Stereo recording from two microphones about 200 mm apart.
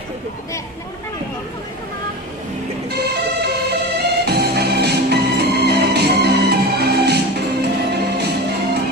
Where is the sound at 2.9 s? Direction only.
55° right (ahead or behind).